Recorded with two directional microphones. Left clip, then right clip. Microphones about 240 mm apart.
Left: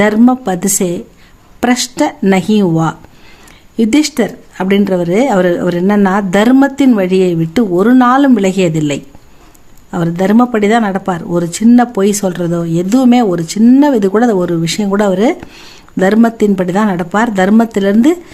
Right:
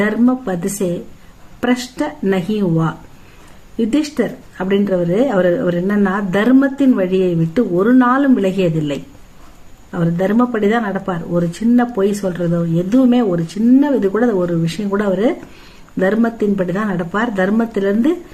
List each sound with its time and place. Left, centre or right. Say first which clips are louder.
0.0 s speech: left 6 dB; left